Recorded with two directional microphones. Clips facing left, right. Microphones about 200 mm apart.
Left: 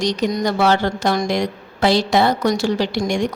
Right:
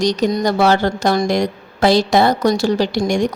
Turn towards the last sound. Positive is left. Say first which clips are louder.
# right 3 dB
turn(degrees=-40)  # may be behind; listen again after turning